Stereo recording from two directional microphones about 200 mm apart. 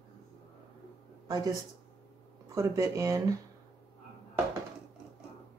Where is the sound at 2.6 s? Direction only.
15° right (ahead or behind).